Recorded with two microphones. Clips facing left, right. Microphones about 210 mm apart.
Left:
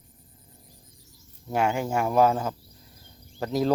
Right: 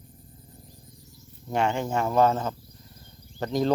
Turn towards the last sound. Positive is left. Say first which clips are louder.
# even
turn(degrees=5)  # may be behind; listen again after turning